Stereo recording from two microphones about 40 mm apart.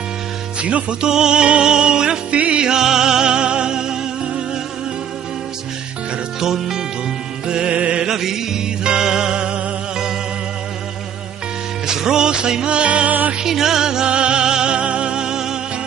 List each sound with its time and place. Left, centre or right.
0.6 s music: right
1.0 s music: centre
2.3 s music: right
2.7 s music: centre
6.4 s speech: centre
7.4 s music: right
8.0 s music: centre
11.8 s music: centre; by 13.1 s right
13.4 s music: centre